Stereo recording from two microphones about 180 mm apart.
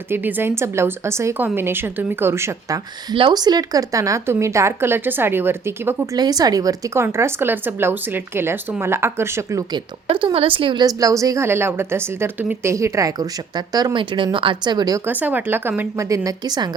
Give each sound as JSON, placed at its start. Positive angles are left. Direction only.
{"t": 0.1, "sound": "a woman's voice", "side_deg": -10}